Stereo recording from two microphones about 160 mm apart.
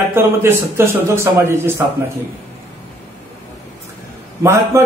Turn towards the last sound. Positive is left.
turn(degrees=-15)  # may be behind; listen again after turning